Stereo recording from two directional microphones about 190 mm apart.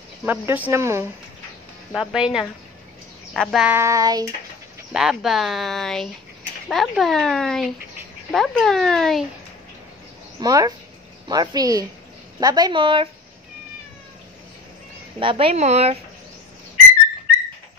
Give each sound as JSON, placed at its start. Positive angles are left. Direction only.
{"t": 0.2, "sound": "speech", "side_deg": -10}
{"t": 2.0, "sound": "speech", "side_deg": -5}
{"t": 3.3, "sound": "speech", "side_deg": 0}
{"t": 3.7, "sound": "speech", "side_deg": -15}
{"t": 4.9, "sound": "speech", "side_deg": 0}
{"t": 10.4, "sound": "speech", "side_deg": -20}
{"t": 15.1, "sound": "speech", "side_deg": -30}